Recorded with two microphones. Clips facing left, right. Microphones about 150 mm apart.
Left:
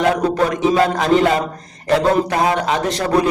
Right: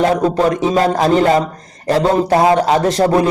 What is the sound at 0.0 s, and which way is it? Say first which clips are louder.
A man's voice: right 3 dB; 35° right (ahead or behind).